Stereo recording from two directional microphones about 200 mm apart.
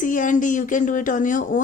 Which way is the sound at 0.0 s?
40° left (ahead or behind).